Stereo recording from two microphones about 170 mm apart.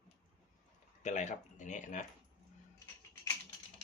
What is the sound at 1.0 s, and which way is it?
Speech, 45° left (ahead or behind).